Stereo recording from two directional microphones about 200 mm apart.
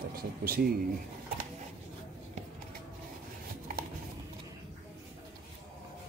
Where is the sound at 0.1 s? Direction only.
45° right (ahead or behind).